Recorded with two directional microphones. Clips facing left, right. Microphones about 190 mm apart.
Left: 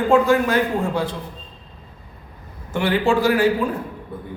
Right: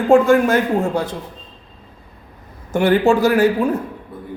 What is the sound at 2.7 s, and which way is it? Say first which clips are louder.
Speech: right 5 dB; 45° right (ahead or behind).